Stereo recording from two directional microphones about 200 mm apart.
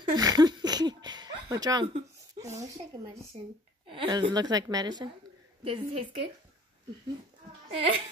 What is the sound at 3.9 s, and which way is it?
A woman's voice, 25° right (ahead or behind).